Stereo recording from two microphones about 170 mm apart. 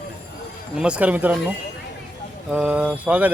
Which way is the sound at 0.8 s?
5° right (ahead or behind).